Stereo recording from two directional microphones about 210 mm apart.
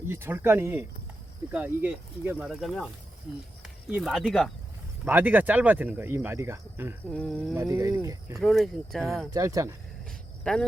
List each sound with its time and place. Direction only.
0.1 s speech: 10° right (ahead or behind)
5.0 s speech: 10° right (ahead or behind)
7.1 s speech: 5° left (ahead or behind)
7.5 s speech: 15° right (ahead or behind)
8.4 s speech: centre (ahead or behind)
9.3 s speech: 15° right (ahead or behind)
10.1 s cricket: 5° left (ahead or behind)